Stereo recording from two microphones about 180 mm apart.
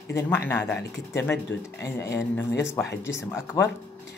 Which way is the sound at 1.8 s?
15° left (ahead or behind).